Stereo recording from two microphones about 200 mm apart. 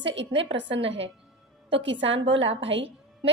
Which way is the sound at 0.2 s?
65° right (ahead or behind).